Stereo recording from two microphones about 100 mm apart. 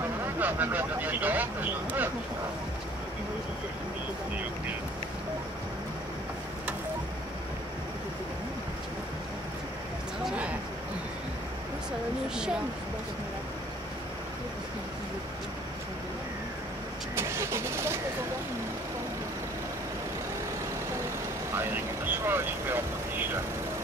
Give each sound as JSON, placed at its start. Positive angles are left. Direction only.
{"t": 0.4, "sound": "speech", "side_deg": -20}
{"t": 10.2, "sound": "a sound", "side_deg": -10}
{"t": 17.1, "sound": "vehicle", "side_deg": -25}
{"t": 21.5, "sound": "vehicle", "side_deg": -25}